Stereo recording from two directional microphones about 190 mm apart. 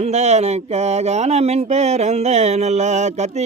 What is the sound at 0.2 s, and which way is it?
A man's voice, 35° right (ahead or behind).